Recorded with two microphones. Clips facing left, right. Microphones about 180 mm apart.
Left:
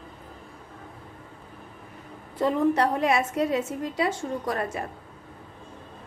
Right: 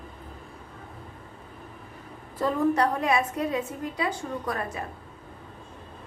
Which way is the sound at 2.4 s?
25° left (ahead or behind).